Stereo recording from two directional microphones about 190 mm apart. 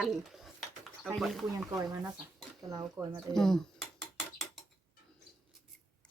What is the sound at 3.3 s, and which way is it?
Speech, centre (ahead or behind).